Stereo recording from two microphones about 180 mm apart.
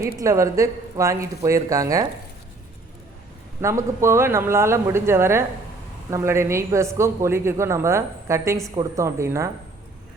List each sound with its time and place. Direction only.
0.2 s a woman's voice: 15° right (ahead or behind)
3.6 s a woman's voice: 15° right (ahead or behind)